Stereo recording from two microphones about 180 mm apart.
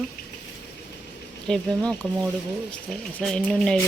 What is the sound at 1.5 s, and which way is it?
Speech, 5° left (ahead or behind).